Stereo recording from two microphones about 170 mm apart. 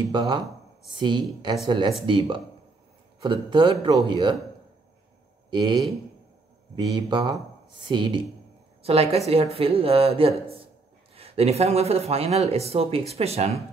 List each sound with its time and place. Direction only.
0.1 s a man's voice: 25° right (ahead or behind)
5.5 s a man's voice: 25° right (ahead or behind)